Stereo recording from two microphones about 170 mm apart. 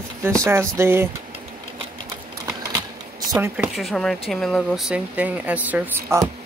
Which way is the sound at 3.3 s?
15° right (ahead or behind).